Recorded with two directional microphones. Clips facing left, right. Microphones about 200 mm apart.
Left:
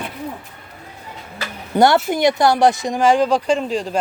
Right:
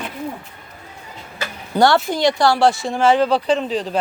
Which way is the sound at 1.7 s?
20° left (ahead or behind).